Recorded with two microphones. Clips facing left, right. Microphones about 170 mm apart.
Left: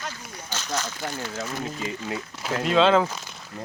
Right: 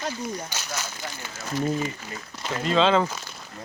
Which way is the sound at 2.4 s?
5° left (ahead or behind).